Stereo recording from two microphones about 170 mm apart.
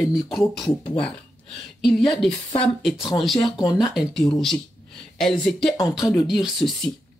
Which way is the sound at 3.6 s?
20° left (ahead or behind).